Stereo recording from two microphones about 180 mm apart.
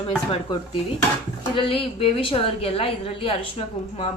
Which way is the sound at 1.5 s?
30° left (ahead or behind).